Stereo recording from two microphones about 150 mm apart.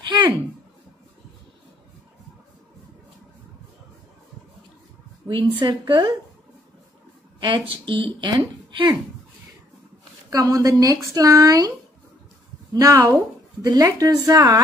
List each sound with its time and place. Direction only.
5.3 s a woman's voice: 30° right (ahead or behind)
7.3 s speech: 30° right (ahead or behind)
10.3 s a woman's voice: 25° right (ahead or behind)
12.7 s a woman's voice: 25° right (ahead or behind)